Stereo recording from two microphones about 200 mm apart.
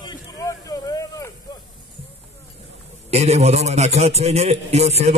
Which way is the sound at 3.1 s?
30° right (ahead or behind).